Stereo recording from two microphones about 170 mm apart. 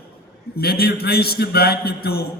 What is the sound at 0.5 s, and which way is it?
A man's voice, 65° left (ahead or behind).